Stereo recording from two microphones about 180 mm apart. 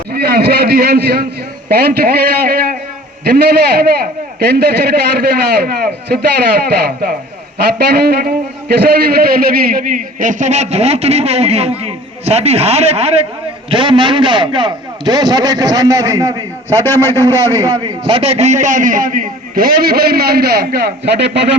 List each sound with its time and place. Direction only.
0.1 s a man's voice: 60° right (ahead or behind)
7.8 s a man's voice: 60° right (ahead or behind); by 16.4 s 20° right (ahead or behind)
16.6 s a man's voice: 10° left (ahead or behind)
17.6 s a man's voice: 20° right (ahead or behind); by 21.4 s 70° right (ahead or behind)